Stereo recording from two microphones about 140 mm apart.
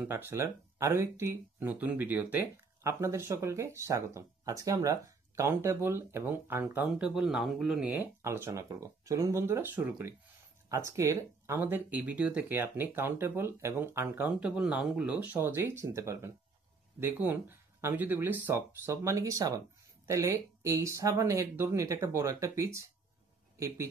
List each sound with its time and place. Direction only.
0.0 s speech: 15° right (ahead or behind)
7.2 s speech: 5° right (ahead or behind); by 22.8 s 20° right (ahead or behind)